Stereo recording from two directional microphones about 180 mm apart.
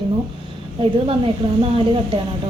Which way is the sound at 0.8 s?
30° right (ahead or behind).